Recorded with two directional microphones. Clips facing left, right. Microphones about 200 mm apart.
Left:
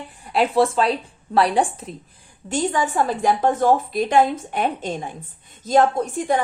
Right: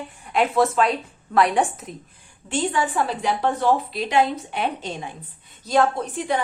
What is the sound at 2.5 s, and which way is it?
A woman's voice, 40° left (ahead or behind).